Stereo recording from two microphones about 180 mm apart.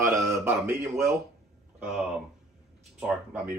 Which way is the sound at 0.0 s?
15° right (ahead or behind).